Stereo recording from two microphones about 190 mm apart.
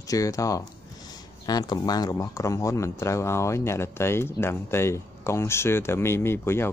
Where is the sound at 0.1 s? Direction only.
15° left (ahead or behind).